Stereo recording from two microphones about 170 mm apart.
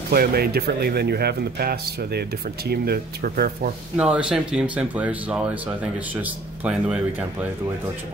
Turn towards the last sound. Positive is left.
turn(degrees=-5)  # may be behind; listen again after turning